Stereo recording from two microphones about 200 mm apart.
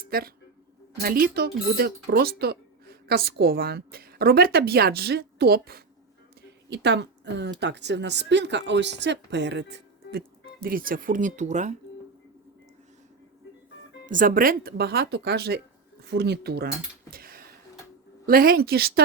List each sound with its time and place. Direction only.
0.1 s speech: 50° right (ahead or behind)
6.7 s a woman's voice: 60° right (ahead or behind); by 11.7 s 35° right (ahead or behind)
14.1 s speech: 40° right (ahead or behind)
17.1 s a sound: 45° right (ahead or behind)
18.3 s speech: 50° right (ahead or behind)